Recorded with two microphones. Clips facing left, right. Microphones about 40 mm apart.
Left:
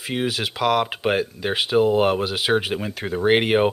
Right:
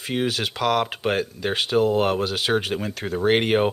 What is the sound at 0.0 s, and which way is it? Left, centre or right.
Speech, centre.